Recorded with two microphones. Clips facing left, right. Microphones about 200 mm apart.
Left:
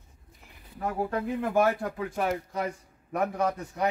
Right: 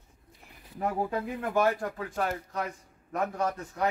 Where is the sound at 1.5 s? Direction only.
15° left (ahead or behind).